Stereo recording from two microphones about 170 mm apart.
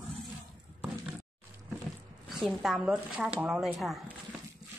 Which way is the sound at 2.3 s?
Centre (ahead or behind).